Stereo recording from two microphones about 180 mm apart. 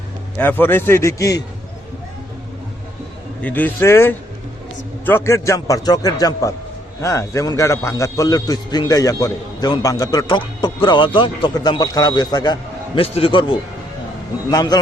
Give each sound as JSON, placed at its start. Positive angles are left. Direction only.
{"t": 0.3, "sound": "a man's voice", "side_deg": 10}
{"t": 3.4, "sound": "a man's voice", "side_deg": 10}